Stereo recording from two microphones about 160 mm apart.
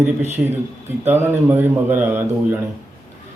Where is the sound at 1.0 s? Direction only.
15° right (ahead or behind).